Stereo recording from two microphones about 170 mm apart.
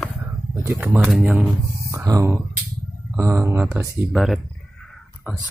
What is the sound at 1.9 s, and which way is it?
Speech, 20° right (ahead or behind).